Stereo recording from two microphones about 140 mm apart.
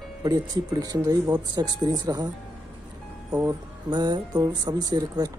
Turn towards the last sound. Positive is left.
turn(degrees=-30)  # may be behind; listen again after turning